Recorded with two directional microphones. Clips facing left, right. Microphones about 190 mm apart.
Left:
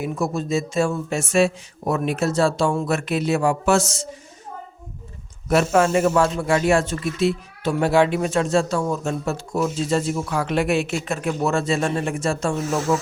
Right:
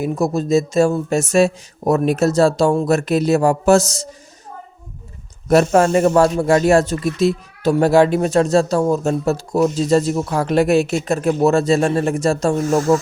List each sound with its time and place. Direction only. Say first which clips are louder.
0.0 s speech: right 5 dB; 40° right (ahead or behind)
5.5 s speech: right 5 dB; 40° right (ahead or behind)
12.6 s speech: right 7 dB; centre (ahead or behind)